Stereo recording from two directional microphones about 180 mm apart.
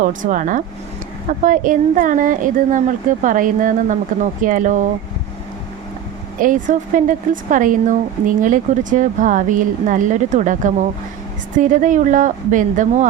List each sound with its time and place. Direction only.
0.0 s a woman's voice: 45° right (ahead or behind)
6.4 s a woman's voice: 45° right (ahead or behind)